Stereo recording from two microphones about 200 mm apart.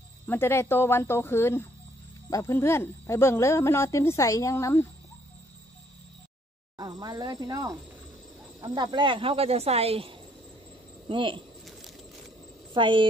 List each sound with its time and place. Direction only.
0.3 s speech: 10° left (ahead or behind)
6.8 s speech: 20° right (ahead or behind)
12.7 s speech: 25° right (ahead or behind)